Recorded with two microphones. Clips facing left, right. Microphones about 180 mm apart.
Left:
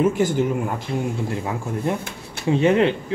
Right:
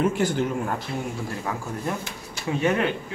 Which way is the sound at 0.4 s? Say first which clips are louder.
Left 3 dB; 10° left (ahead or behind).